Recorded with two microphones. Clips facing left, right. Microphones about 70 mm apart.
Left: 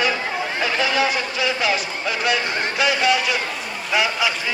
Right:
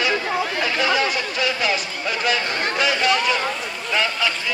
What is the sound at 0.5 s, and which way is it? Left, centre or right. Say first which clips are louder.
Chatter: even; centre.